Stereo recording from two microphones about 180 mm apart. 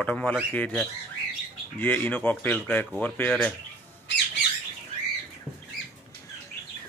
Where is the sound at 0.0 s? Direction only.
10° left (ahead or behind).